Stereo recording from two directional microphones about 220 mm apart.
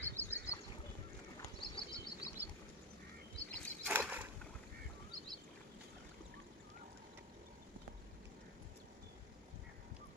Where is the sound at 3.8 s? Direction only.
5° right (ahead or behind).